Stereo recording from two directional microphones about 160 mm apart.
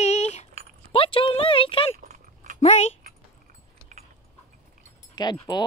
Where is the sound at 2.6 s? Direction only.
45° left (ahead or behind).